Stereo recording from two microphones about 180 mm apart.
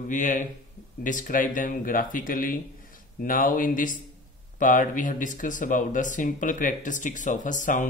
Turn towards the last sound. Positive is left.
turn(degrees=45)  # may be behind; listen again after turning